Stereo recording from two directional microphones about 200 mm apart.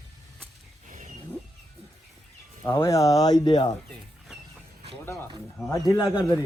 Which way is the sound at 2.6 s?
15° left (ahead or behind).